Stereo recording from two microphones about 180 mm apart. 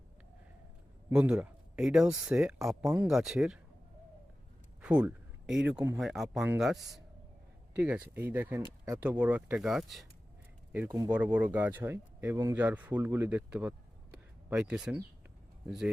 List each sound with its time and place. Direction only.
1.1 s speech: 5° right (ahead or behind)
4.8 s a sound: 5° right (ahead or behind)
6.0 s speech: centre (ahead or behind)
7.8 s speech: 10° right (ahead or behind)